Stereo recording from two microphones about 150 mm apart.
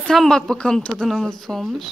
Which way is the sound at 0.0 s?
Centre (ahead or behind).